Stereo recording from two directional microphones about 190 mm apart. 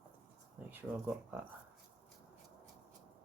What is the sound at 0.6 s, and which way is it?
Speech, 10° right (ahead or behind).